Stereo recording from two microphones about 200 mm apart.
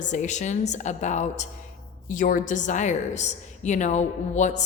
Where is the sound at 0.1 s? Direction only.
35° left (ahead or behind).